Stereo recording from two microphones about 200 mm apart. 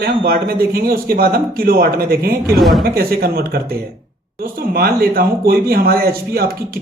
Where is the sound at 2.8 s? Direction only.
50° right (ahead or behind).